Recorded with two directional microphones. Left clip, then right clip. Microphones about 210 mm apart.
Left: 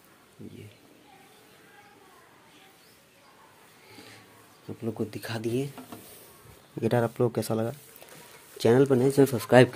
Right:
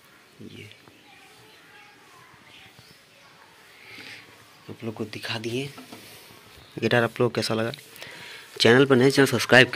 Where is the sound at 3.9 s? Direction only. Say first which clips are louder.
Right 8 dB; 15° left (ahead or behind).